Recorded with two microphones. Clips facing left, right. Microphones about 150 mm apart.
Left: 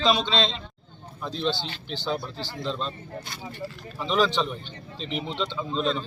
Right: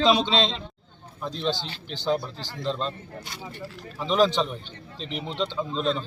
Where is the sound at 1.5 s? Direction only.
45° right (ahead or behind).